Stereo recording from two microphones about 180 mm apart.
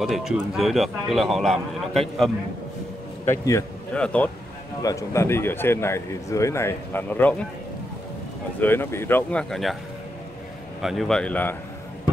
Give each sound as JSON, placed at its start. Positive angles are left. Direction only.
{"t": 0.0, "sound": "speech", "side_deg": 0}
{"t": 3.3, "sound": "a man's voice", "side_deg": 15}
{"t": 8.5, "sound": "speech", "side_deg": 10}
{"t": 10.8, "sound": "speech", "side_deg": 0}